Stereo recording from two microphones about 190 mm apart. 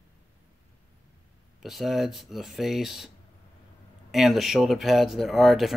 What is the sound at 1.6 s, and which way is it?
Speech, centre (ahead or behind).